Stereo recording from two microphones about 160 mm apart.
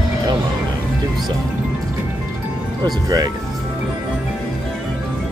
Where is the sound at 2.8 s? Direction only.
25° right (ahead or behind).